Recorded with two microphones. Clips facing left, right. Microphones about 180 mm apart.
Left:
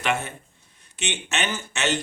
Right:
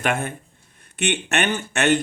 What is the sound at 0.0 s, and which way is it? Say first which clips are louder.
Speech: right 2 dB; 50° right (ahead or behind).